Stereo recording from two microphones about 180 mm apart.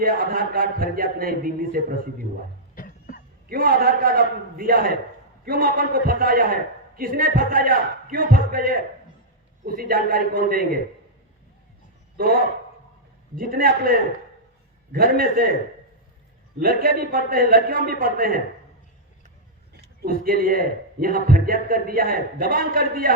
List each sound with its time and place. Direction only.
0.0 s a man's voice: 55° right (ahead or behind)
2.7 s cough: 50° left (ahead or behind)
3.5 s a man's voice: 55° right (ahead or behind)
12.1 s a man's voice: 55° right (ahead or behind)
16.6 s a man's voice: 55° right (ahead or behind)
19.7 s a man's voice: 55° right (ahead or behind)